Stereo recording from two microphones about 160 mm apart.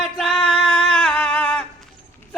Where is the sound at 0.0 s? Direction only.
Centre (ahead or behind).